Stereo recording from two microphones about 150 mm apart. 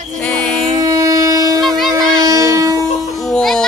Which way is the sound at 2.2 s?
25° right (ahead or behind).